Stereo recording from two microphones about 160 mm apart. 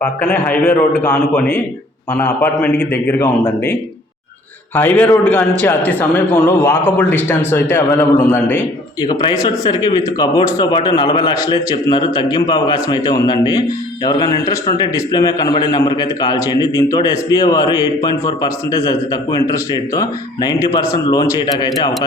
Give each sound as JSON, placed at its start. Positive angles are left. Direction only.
{"t": 0.2, "sound": "a man's voice", "side_deg": 10}
{"t": 9.0, "sound": "speech", "side_deg": 25}